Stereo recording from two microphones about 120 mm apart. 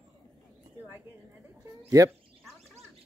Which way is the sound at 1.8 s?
30° right (ahead or behind).